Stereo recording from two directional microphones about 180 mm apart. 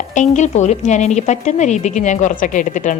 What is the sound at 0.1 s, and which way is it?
A woman's voice, 40° left (ahead or behind).